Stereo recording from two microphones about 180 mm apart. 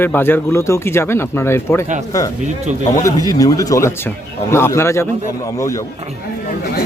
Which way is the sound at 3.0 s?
20° left (ahead or behind).